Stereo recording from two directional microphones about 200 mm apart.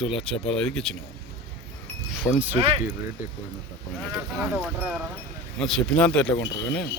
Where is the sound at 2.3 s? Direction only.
10° left (ahead or behind).